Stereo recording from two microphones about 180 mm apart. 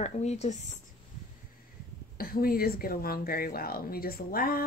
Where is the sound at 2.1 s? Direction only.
55° left (ahead or behind).